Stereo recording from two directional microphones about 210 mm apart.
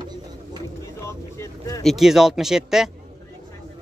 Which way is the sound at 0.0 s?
20° right (ahead or behind).